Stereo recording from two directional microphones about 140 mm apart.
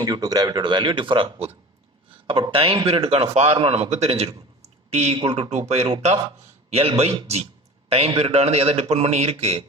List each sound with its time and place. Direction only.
0.0 s a man's voice: 25° right (ahead or behind); by 9.6 s 45° right (ahead or behind)